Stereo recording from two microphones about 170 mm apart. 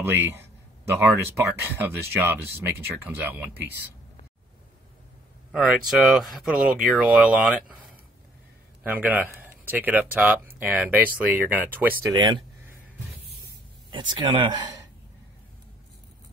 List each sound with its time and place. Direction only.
0.0 s speech: 15° right (ahead or behind)
5.5 s speech: 5° right (ahead or behind)
8.8 s speech: 10° right (ahead or behind)
12.1 s speech: 30° right (ahead or behind)
13.8 s speech: 25° right (ahead or behind)